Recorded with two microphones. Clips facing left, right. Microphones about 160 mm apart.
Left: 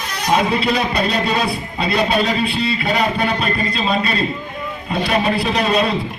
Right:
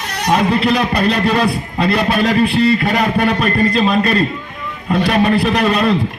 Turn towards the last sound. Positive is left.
turn(degrees=-55)  # may be behind; listen again after turning